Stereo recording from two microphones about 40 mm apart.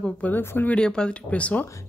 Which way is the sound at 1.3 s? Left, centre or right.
Left.